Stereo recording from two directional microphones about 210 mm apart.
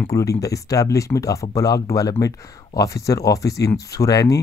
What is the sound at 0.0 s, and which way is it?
Speech, 15° left (ahead or behind).